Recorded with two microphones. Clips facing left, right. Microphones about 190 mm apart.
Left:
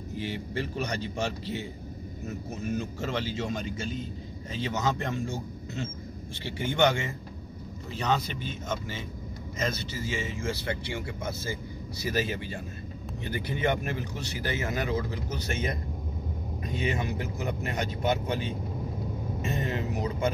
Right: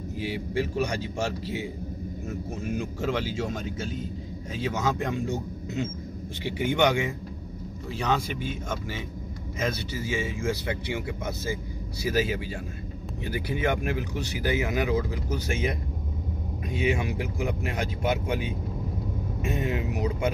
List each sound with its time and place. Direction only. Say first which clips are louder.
0.1 s speech: right 3 dB; 10° right (ahead or behind)